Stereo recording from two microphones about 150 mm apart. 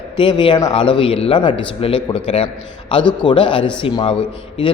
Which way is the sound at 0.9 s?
40° left (ahead or behind).